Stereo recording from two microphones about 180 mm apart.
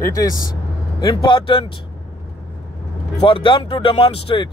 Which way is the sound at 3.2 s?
30° left (ahead or behind).